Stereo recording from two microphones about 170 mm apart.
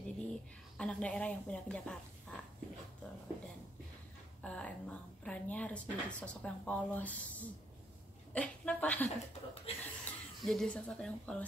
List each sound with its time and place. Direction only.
0.0 s a woman's voice: 5° left (ahead or behind)
4.4 s speech: 5° left (ahead or behind)
9.7 s speech: 35° left (ahead or behind)
10.0 s speech: centre (ahead or behind)